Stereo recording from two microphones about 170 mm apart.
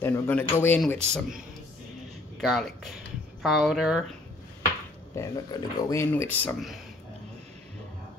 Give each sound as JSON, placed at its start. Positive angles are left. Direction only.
{"t": 0.0, "sound": "a man's voice", "side_deg": 10}
{"t": 2.4, "sound": "speech", "side_deg": 0}
{"t": 5.1, "sound": "a man's voice", "side_deg": 20}